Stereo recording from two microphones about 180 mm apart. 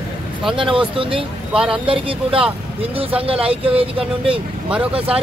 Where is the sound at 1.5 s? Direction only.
5° right (ahead or behind).